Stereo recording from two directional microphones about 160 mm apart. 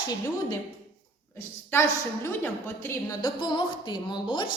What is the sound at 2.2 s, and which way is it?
Speech, 15° left (ahead or behind).